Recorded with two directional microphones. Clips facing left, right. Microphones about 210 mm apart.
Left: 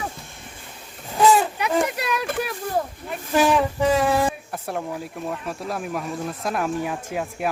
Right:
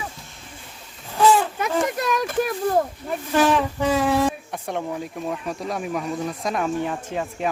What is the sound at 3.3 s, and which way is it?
Speech, centre (ahead or behind).